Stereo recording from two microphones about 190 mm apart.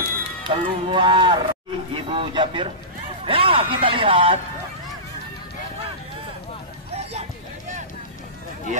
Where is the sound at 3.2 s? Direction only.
30° right (ahead or behind).